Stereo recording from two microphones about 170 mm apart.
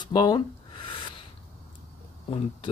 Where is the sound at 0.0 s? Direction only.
25° left (ahead or behind).